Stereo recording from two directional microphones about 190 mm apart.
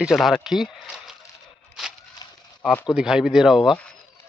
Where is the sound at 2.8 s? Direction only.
5° right (ahead or behind).